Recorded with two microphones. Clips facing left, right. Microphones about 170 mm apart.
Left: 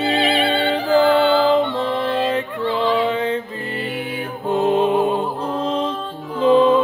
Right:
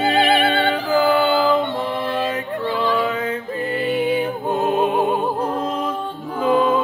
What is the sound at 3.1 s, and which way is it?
A capella, 30° left (ahead or behind).